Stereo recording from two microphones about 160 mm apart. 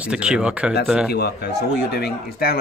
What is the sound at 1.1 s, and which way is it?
Speech, 90° left.